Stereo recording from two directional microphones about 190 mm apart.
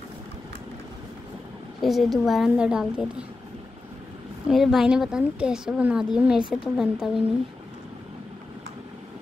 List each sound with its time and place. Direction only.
1.8 s speech: centre (ahead or behind)
4.5 s speech: centre (ahead or behind)